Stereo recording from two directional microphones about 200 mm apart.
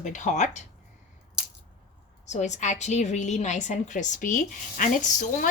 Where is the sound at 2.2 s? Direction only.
35° left (ahead or behind).